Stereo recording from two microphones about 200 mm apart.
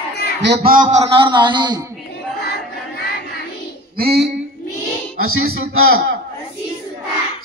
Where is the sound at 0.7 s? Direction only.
40° right (ahead or behind).